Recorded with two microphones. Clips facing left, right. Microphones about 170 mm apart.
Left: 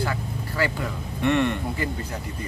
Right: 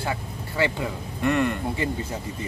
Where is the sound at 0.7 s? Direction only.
5° right (ahead or behind).